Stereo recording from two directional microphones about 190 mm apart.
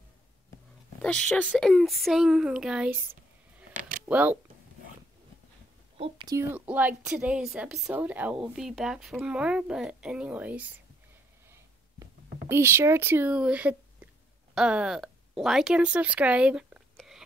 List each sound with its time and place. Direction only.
1.0 s a woman's voice: 5° left (ahead or behind)
5.9 s a woman's voice: 20° right (ahead or behind)
11.5 s a sound: 15° right (ahead or behind)
14.5 s speech: 5° right (ahead or behind)